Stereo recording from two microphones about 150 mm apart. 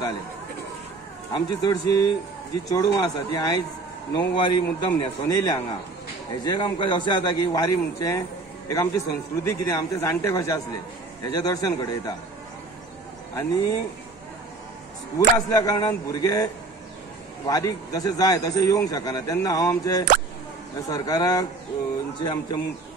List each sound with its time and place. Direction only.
1.3 s a man's voice: 25° left (ahead or behind)
13.3 s a man's voice: 20° left (ahead or behind)
15.1 s a man's voice: 25° left (ahead or behind)
17.5 s a man's voice: 25° left (ahead or behind)